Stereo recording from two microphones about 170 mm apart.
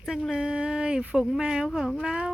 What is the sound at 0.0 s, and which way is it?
A woman's voice, centre (ahead or behind).